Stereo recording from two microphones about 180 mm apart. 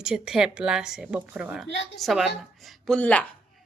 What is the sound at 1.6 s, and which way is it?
Speech, 90° left.